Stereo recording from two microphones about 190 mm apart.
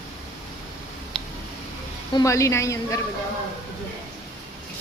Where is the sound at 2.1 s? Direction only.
15° left (ahead or behind).